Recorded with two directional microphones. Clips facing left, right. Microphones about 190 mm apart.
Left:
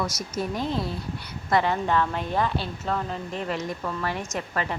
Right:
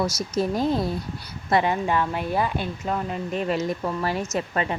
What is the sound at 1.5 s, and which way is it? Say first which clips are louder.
Speech: right 1 dB; 15° right (ahead or behind).